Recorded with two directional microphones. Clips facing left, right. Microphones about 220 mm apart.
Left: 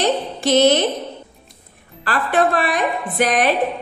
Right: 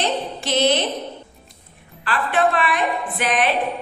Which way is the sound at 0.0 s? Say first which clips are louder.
Left 5 dB; 40° left (ahead or behind).